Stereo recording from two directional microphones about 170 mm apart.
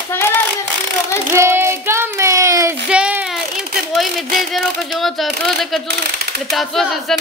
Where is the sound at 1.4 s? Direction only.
15° right (ahead or behind).